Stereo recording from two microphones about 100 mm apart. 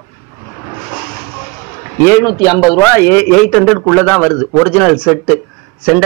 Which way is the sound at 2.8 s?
20° left (ahead or behind).